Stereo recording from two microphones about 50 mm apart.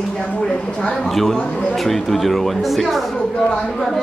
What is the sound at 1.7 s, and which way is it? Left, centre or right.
Speech, centre.